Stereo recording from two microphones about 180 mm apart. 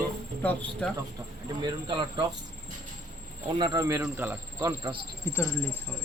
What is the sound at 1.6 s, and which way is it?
Speech, 25° right (ahead or behind).